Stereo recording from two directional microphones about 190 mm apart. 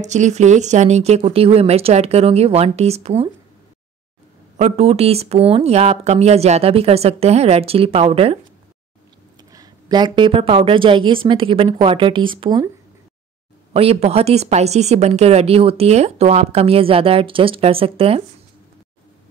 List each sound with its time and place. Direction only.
0.0 s a woman's voice: 35° right (ahead or behind)
4.6 s a woman's voice: 35° right (ahead or behind)
9.5 s a woman's voice: 20° right (ahead or behind)
13.7 s a woman's voice: 30° right (ahead or behind)